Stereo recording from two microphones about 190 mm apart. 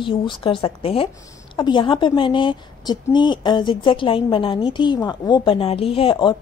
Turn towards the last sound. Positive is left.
turn(degrees=30)  # may be behind; listen again after turning